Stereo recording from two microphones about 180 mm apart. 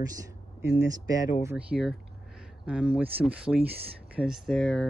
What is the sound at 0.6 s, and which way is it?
A woman's voice, 15° right (ahead or behind).